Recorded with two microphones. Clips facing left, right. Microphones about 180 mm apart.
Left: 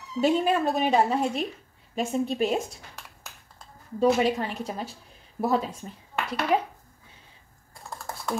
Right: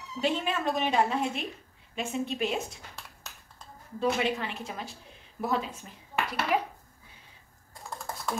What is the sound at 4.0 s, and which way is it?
A woman's voice, 40° left (ahead or behind).